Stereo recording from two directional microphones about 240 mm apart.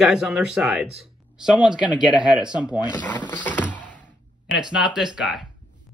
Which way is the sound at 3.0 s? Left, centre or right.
Centre.